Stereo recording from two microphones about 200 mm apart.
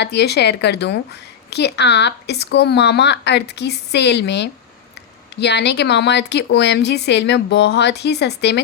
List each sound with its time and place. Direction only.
0.0 s speech: 55° left (ahead or behind)